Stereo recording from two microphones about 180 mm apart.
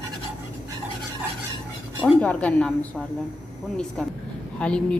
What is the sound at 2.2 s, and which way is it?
A woman's voice, 5° left (ahead or behind).